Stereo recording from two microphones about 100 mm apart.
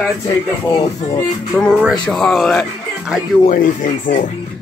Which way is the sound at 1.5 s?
5° left (ahead or behind).